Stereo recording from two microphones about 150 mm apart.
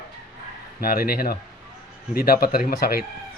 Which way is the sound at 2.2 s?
80° left.